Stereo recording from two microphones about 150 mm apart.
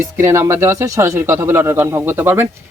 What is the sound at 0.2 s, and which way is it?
Speech, 20° right (ahead or behind).